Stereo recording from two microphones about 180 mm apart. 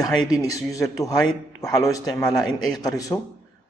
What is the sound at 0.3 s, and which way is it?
A man's voice, 20° left (ahead or behind).